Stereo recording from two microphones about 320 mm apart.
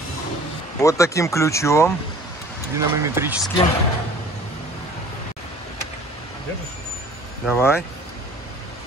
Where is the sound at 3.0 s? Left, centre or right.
Centre.